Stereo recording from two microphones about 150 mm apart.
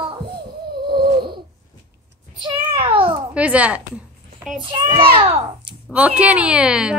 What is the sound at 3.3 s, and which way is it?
Speech, 10° right (ahead or behind).